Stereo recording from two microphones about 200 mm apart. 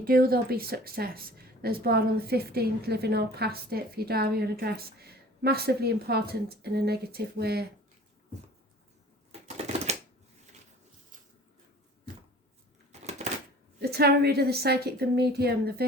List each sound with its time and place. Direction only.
0.0 s speech: 50° right (ahead or behind)
9.3 s typewriter: 35° right (ahead or behind)
12.9 s a sound: 35° right (ahead or behind)
13.8 s speech: 50° right (ahead or behind)